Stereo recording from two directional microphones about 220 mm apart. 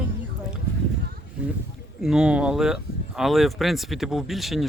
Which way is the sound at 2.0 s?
5° right (ahead or behind).